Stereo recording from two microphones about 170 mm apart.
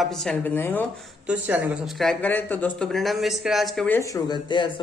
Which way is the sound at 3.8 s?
10° left (ahead or behind).